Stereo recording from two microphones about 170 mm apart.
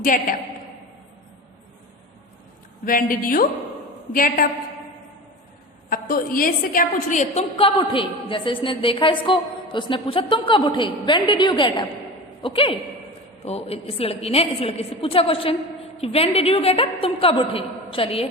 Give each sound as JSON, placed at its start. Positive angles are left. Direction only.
{"t": 0.0, "sound": "a woman's voice", "side_deg": 55}
{"t": 2.8, "sound": "a woman's voice", "side_deg": 55}
{"t": 5.9, "sound": "a woman's voice", "side_deg": 55}